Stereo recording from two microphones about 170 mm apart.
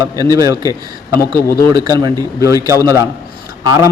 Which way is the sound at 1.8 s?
25° right (ahead or behind).